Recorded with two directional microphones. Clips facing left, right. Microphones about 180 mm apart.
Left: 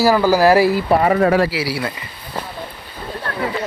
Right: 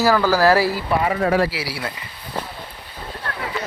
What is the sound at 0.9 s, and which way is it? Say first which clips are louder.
Speech: left 6 dB; 45° left (ahead or behind).